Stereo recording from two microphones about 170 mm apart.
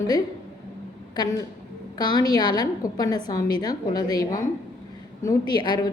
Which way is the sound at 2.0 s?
25° left (ahead or behind).